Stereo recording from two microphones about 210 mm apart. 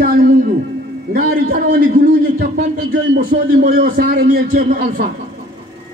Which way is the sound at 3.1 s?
45° right (ahead or behind).